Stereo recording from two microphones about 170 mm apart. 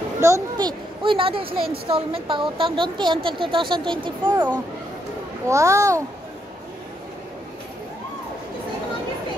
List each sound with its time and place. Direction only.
0.2 s a woman's voice: 20° right (ahead or behind)
5.5 s a child's voice: 20° right (ahead or behind)